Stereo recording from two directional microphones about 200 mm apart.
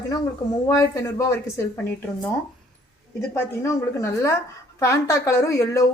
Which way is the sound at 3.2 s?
15° left (ahead or behind).